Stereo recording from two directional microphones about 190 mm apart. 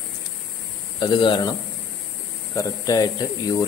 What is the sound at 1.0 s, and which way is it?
Speech, 25° left (ahead or behind).